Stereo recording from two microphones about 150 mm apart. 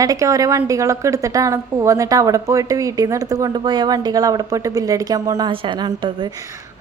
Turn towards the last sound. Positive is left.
turn(degrees=-30)  # may be behind; listen again after turning